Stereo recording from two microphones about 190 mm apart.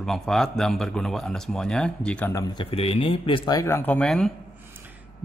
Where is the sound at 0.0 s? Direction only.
Centre (ahead or behind).